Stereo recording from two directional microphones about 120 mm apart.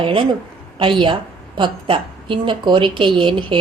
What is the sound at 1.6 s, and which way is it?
Speech, 45° right (ahead or behind).